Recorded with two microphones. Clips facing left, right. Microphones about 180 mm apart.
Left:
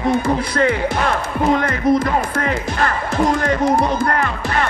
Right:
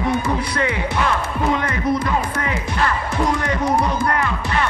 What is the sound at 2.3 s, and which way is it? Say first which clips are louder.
Music: left 3 dB; 45° left (ahead or behind).